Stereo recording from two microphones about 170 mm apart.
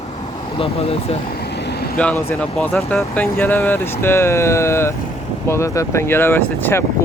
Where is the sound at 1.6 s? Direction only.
75° left (ahead or behind).